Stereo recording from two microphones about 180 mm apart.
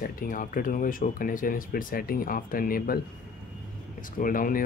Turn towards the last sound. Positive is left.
turn(degrees=50)  # may be behind; listen again after turning